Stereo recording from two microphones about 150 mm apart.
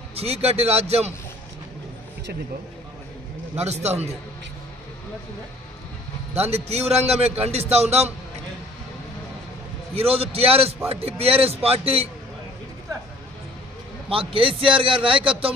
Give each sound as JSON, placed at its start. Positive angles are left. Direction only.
{"t": 0.1, "sound": "a man's voice", "side_deg": -45}
{"t": 3.5, "sound": "a man's voice", "side_deg": -45}
{"t": 6.3, "sound": "a man's voice", "side_deg": -45}
{"t": 9.9, "sound": "a man's voice", "side_deg": -40}
{"t": 14.0, "sound": "a man's voice", "side_deg": -35}